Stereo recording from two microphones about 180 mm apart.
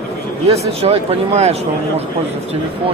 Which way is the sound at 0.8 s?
35° right (ahead or behind).